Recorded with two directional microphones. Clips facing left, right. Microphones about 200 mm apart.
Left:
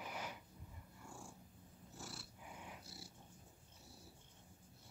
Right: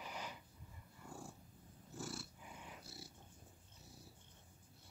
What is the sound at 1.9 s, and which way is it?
Cat, 50° right (ahead or behind).